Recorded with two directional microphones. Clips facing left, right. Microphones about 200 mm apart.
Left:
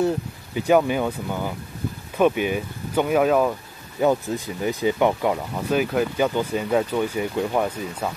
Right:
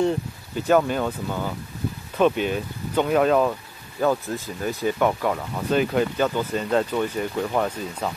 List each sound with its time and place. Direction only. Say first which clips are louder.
0.6 s speech: left 1 dB; 15° left (ahead or behind)
4.0 s speech: left 2 dB; 15° left (ahead or behind)